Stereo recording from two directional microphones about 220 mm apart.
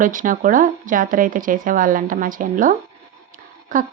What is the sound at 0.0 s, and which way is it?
A woman's voice, 35° right (ahead or behind).